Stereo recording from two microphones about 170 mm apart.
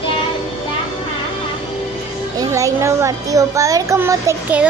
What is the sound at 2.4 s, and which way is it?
A child's voice, 20° right (ahead or behind).